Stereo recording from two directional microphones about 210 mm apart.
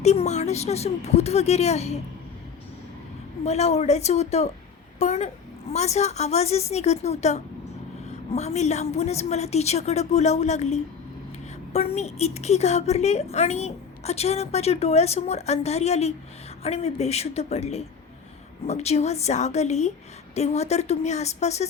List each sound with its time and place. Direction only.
0.0 s a woman's voice: 30° left (ahead or behind)
3.4 s a woman's voice: 30° left (ahead or behind)